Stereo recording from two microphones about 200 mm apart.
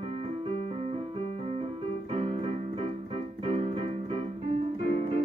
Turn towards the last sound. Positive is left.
turn(degrees=-30)  # may be behind; listen again after turning